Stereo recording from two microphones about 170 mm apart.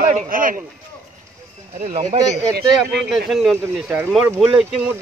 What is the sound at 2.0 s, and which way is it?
Speech, 25° right (ahead or behind).